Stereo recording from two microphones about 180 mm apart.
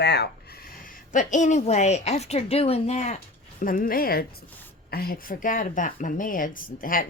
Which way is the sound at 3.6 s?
50° left (ahead or behind).